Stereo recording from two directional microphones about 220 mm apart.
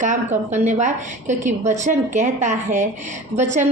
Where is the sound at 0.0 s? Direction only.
35° right (ahead or behind).